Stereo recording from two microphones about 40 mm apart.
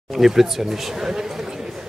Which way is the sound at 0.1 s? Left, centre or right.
Centre.